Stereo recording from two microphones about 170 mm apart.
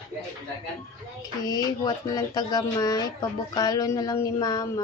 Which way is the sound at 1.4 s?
20° left (ahead or behind).